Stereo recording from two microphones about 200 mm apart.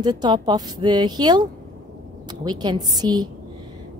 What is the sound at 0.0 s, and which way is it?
A woman's voice, 20° right (ahead or behind).